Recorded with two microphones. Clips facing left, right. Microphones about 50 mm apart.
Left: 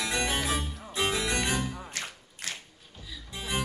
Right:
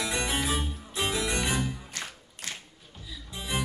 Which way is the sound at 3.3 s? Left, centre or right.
Left.